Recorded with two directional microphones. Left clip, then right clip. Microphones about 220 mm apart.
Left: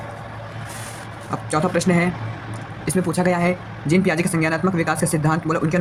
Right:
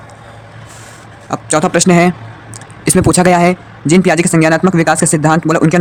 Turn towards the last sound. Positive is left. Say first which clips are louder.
# right 10 dB
turn(degrees=-50)  # may be behind; listen again after turning